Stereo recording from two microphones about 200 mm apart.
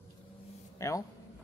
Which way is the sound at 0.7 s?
15° left (ahead or behind).